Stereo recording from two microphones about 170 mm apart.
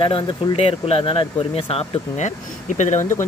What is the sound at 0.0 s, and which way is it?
Speech, 30° left (ahead or behind).